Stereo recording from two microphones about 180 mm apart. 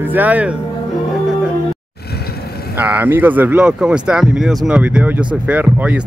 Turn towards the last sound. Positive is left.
turn(degrees=-10)  # may be behind; listen again after turning